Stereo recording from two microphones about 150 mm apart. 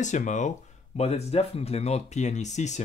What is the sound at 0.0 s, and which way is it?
Speech, 55° left (ahead or behind).